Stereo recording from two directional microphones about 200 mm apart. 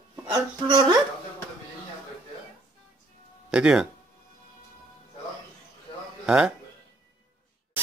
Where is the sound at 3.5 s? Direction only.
5° right (ahead or behind).